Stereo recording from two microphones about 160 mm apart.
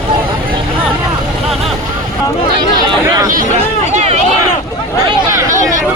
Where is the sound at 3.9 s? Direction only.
40° right (ahead or behind).